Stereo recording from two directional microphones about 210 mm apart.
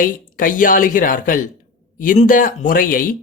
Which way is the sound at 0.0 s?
40° left (ahead or behind).